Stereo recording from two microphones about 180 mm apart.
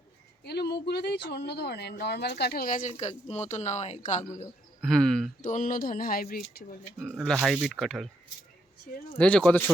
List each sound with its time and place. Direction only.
0.4 s speech: 65° left (ahead or behind); by 2.9 s 50° left (ahead or behind)
2.9 s speech: 35° left (ahead or behind)
4.8 s speech: centre (ahead or behind)
5.4 s speech: 45° left (ahead or behind)
7.0 s speech: centre (ahead or behind)
9.1 s speech: 5° left (ahead or behind)